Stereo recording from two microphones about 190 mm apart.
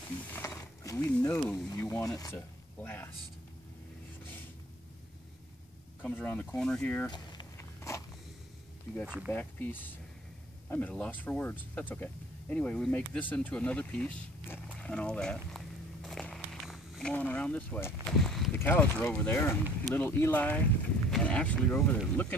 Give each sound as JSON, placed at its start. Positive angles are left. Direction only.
{"t": 0.3, "sound": "a sound", "side_deg": 10}
{"t": 1.7, "sound": "speech", "side_deg": 15}
{"t": 6.0, "sound": "speech", "side_deg": 10}
{"t": 7.1, "sound": "a sound", "side_deg": 20}
{"t": 9.0, "sound": "speech", "side_deg": -5}
{"t": 9.3, "sound": "speech", "side_deg": 10}
{"t": 14.8, "sound": "walk", "side_deg": 5}
{"t": 18.2, "sound": "speech", "side_deg": 0}